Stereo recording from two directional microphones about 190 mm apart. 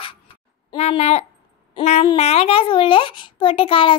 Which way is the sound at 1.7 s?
35° left (ahead or behind).